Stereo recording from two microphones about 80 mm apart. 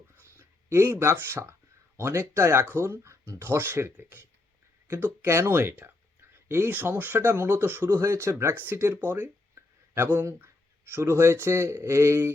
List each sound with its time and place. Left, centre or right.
0.2 s speech: right